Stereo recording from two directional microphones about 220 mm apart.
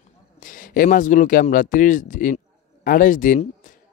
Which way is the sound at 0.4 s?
40° left (ahead or behind).